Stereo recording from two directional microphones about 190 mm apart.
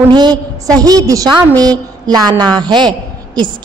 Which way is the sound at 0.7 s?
20° right (ahead or behind).